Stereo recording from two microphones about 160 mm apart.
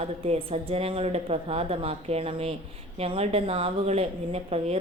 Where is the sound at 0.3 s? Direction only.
40° right (ahead or behind).